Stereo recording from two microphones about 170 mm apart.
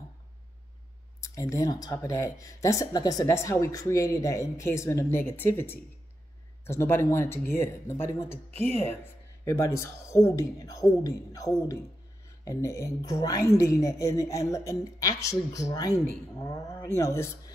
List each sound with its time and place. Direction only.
1.2 s a woman's voice: 20° left (ahead or behind)